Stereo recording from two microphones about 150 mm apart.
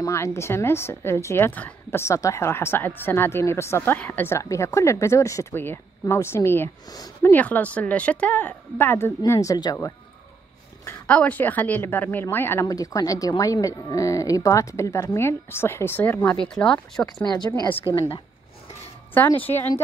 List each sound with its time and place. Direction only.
0.0 s a woman's voice: 20° left (ahead or behind)
10.9 s a woman's voice: 10° left (ahead or behind)
17.3 s speech: 25° left (ahead or behind)
19.1 s a woman's voice: 10° left (ahead or behind)